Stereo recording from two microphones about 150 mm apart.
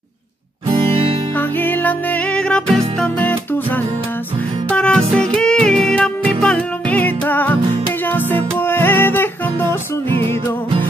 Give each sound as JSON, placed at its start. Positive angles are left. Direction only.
{"t": 1.6, "sound": "music", "side_deg": 10}
{"t": 8.5, "sound": "music", "side_deg": 15}
{"t": 10.1, "sound": "music", "side_deg": -35}